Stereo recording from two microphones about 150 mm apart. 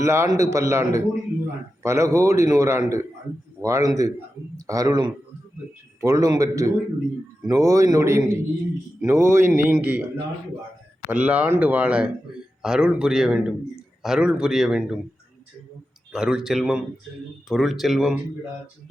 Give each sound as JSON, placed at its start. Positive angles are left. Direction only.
{"t": 0.0, "sound": "a man's voice", "side_deg": -20}
{"t": 11.1, "sound": "a man's voice", "side_deg": -10}
{"t": 16.1, "sound": "a man's voice", "side_deg": -5}